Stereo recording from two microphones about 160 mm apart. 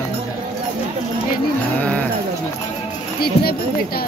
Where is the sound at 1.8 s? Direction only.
10° left (ahead or behind).